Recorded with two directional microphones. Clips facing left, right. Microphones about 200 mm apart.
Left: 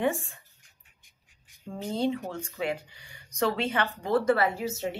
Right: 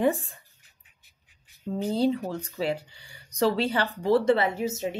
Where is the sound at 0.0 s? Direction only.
35° right (ahead or behind).